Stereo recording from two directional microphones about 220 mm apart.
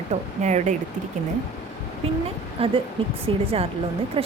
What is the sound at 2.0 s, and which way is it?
A woman's voice, 25° right (ahead or behind).